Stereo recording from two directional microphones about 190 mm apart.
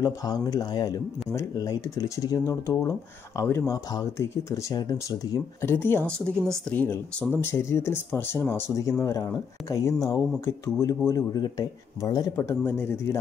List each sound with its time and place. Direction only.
0.0 s speech: 20° left (ahead or behind)